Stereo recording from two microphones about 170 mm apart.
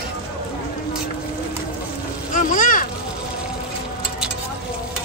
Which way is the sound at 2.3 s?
50° left (ahead or behind).